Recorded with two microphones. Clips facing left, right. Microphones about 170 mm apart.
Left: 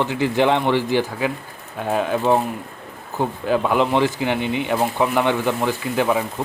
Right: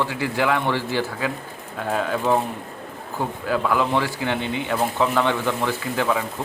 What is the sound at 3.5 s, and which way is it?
Speech, 20° left (ahead or behind).